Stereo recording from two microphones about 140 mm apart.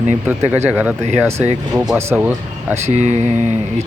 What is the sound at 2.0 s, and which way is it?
Speech, 20° right (ahead or behind).